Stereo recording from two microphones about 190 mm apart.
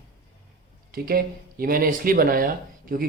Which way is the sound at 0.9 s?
50° right (ahead or behind).